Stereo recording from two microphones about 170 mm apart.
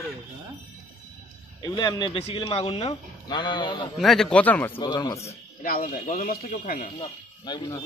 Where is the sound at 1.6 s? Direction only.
25° left (ahead or behind).